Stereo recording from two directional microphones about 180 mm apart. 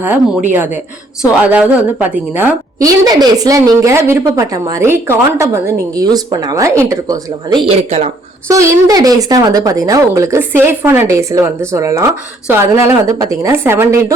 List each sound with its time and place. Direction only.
0.0 s a woman's voice: 10° right (ahead or behind)
2.7 s a woman's voice: 20° right (ahead or behind)
7.7 s speech: 35° right (ahead or behind)
8.4 s a woman's voice: 15° right (ahead or behind)